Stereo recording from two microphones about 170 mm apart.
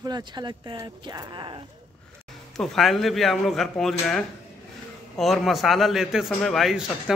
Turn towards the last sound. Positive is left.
turn(degrees=0)  # may be behind; listen again after turning